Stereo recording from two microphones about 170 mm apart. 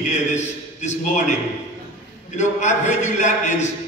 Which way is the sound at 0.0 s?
45° left (ahead or behind).